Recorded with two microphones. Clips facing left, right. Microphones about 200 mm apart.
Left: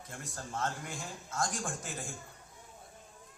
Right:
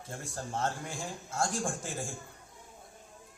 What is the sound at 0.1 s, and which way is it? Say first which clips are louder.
A man's voice: right 4 dB; 30° right (ahead or behind).